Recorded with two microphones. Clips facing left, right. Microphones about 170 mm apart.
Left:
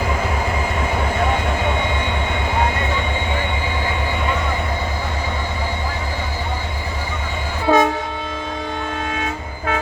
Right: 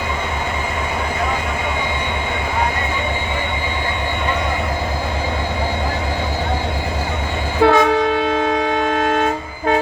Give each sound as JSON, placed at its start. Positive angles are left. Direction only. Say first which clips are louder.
{"t": 7.6, "sound": "train", "louder": "right 3 dB", "side_deg": -90}